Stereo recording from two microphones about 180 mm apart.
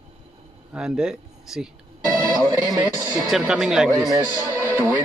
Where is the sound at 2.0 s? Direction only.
20° right (ahead or behind).